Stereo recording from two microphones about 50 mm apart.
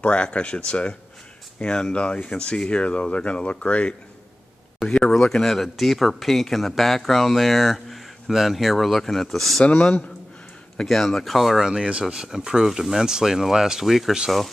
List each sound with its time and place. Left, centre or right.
0.0 s speech: left; by 9.7 s centre
9.7 s speech: left
10.9 s speech: centre